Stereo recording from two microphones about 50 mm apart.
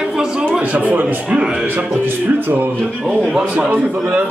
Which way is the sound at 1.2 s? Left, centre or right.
Right.